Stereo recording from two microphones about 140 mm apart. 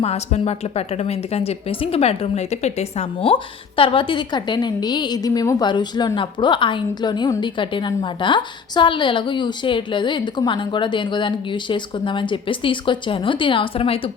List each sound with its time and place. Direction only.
0.0 s a woman's voice: 50° left (ahead or behind)